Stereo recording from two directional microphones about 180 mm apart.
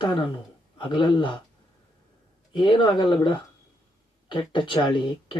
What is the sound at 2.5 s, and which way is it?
Speech, 25° left (ahead or behind).